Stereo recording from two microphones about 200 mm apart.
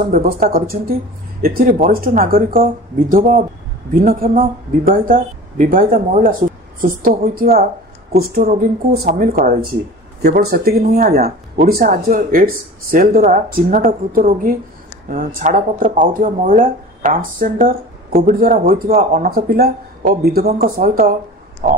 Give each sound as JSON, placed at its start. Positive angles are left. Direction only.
{"t": 0.1, "sound": "speech", "side_deg": -45}
{"t": 9.0, "sound": "speech", "side_deg": -45}